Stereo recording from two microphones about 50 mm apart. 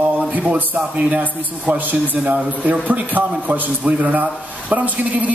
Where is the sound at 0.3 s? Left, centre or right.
Right.